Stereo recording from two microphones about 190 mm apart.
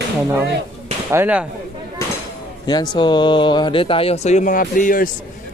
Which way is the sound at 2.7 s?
20° left (ahead or behind).